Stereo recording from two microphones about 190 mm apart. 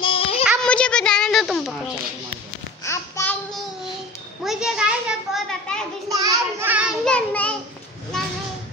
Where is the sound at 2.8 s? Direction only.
15° left (ahead or behind).